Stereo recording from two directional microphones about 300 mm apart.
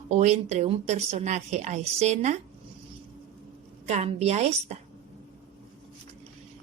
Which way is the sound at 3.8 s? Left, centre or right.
Right.